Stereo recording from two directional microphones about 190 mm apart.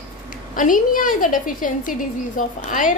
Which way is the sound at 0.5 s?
45° left (ahead or behind).